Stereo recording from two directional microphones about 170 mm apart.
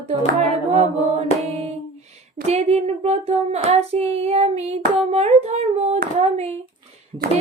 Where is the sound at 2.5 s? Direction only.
40° right (ahead or behind).